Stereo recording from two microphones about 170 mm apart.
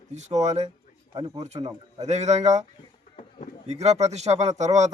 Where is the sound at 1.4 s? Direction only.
40° right (ahead or behind).